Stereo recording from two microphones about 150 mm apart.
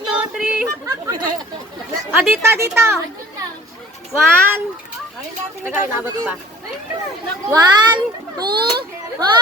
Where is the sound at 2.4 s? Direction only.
15° right (ahead or behind).